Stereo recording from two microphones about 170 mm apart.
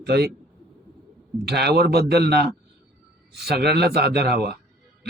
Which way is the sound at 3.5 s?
70° right (ahead or behind).